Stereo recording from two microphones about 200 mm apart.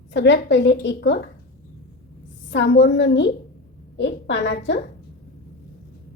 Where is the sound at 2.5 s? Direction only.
60° left (ahead or behind).